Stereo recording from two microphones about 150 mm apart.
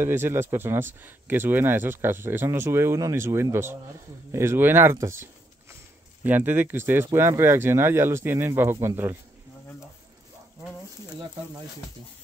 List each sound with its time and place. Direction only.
0.0 s speech: 15° right (ahead or behind)